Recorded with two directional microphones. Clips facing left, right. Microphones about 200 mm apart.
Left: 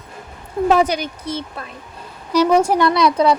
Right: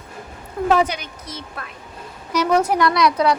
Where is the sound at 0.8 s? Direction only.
40° left (ahead or behind).